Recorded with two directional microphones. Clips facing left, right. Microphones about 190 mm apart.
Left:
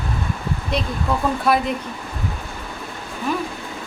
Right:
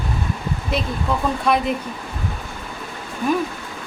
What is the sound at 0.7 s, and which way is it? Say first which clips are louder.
A woman's voice: even; 5° left (ahead or behind).